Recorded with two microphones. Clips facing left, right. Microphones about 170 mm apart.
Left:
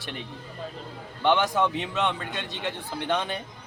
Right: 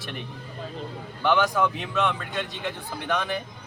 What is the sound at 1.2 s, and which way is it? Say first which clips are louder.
A man's voice: even; 25° left (ahead or behind).